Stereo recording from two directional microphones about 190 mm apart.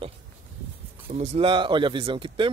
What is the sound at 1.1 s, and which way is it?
A man's voice, 30° right (ahead or behind).